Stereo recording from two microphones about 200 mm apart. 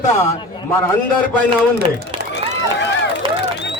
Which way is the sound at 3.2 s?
25° right (ahead or behind).